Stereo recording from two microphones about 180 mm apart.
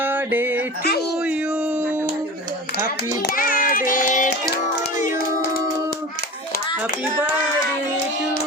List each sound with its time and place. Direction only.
0.0 s music: 10° right (ahead or behind)
3.3 s child singing: 50° left (ahead or behind)